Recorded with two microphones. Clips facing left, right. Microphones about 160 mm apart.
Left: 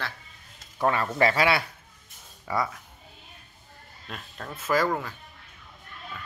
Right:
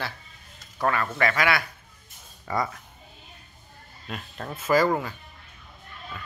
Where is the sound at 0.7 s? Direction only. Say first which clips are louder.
Left 1 dB; 20° left (ahead or behind).